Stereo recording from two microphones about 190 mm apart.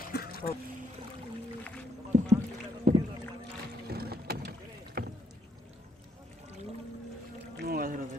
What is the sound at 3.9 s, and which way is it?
Boat, 55° right (ahead or behind).